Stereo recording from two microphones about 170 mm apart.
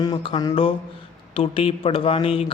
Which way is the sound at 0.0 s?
25° left (ahead or behind).